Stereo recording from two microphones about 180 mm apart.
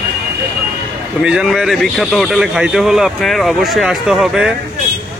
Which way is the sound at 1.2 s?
5° right (ahead or behind).